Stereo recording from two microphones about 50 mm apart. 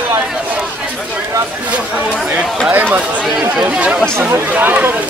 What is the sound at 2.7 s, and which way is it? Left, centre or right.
Speech, right.